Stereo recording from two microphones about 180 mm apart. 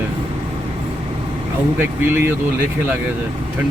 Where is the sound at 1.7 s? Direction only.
10° right (ahead or behind).